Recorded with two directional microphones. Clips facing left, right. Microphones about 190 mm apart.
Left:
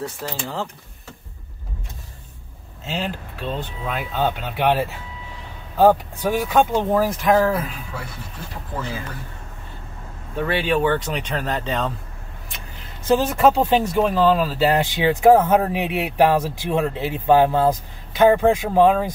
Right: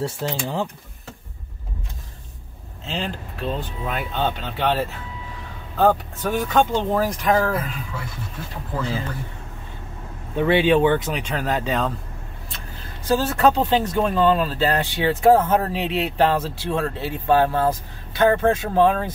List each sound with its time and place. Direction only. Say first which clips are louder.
0.0 s speech: right 3 dB; 20° right (ahead or behind)
2.8 s speech: left 1 dB; 5° left (ahead or behind)
10.3 s speech: right 4 dB; 20° right (ahead or behind)
11.1 s speech: right 1 dB; 5° right (ahead or behind)
12.4 s speech: right 1 dB; 20° left (ahead or behind)